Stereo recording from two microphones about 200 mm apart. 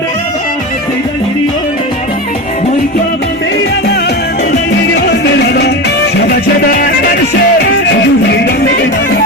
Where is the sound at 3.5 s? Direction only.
55° left (ahead or behind).